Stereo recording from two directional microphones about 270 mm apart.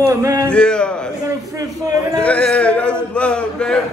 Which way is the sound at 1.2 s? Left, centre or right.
Centre.